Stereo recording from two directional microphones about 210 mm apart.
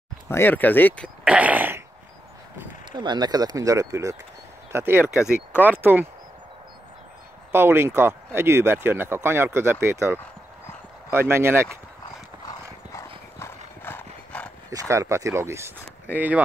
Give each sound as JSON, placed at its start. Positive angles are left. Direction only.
{"t": 0.3, "sound": "speech", "side_deg": 10}
{"t": 2.9, "sound": "speech", "side_deg": -20}
{"t": 5.5, "sound": "speech", "side_deg": 10}
{"t": 5.8, "sound": "speech", "side_deg": -10}
{"t": 7.5, "sound": "speech", "side_deg": -10}
{"t": 13.8, "sound": "horse", "side_deg": 10}
{"t": 14.7, "sound": "speech", "side_deg": -15}